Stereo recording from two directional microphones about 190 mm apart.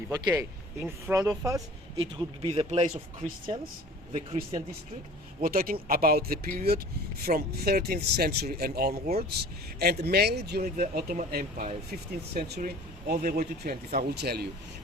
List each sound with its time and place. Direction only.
0.1 s speech: 15° right (ahead or behind)
2.0 s speech: 30° right (ahead or behind)
5.4 s speech: 50° right (ahead or behind)